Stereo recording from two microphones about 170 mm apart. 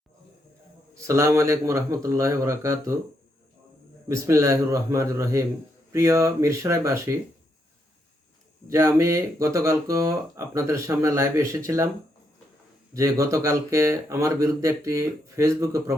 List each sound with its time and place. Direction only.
1.0 s speech: 15° right (ahead or behind)
4.1 s speech: 15° right (ahead or behind)
8.7 s speech: 20° right (ahead or behind)
12.9 s speech: 20° right (ahead or behind)